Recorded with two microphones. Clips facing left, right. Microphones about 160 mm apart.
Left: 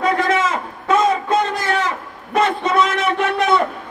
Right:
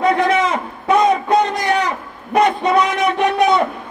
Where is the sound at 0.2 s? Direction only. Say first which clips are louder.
Right 2 dB; 20° right (ahead or behind).